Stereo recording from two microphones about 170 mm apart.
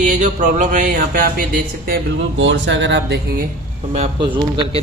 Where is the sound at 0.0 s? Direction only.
45° right (ahead or behind).